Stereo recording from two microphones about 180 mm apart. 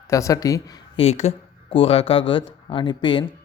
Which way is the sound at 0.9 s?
35° left (ahead or behind).